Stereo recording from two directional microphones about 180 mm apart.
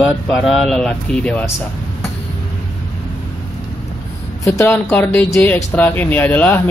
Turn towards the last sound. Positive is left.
turn(degrees=10)  # may be behind; listen again after turning